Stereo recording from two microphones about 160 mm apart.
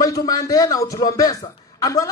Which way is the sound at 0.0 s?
20° left (ahead or behind).